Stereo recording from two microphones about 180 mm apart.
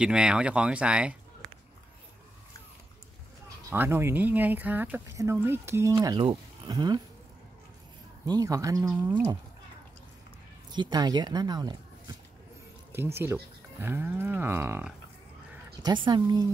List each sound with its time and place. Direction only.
0.0 s speech: 5° right (ahead or behind)
3.4 s speech: 10° right (ahead or behind)
8.3 s speech: 20° right (ahead or behind)
10.7 s speech: 25° right (ahead or behind)
12.9 s speech: 10° right (ahead or behind)
15.8 s speech: 25° right (ahead or behind)